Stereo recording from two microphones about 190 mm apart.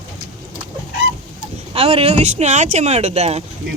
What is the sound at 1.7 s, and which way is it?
Speech, 30° right (ahead or behind).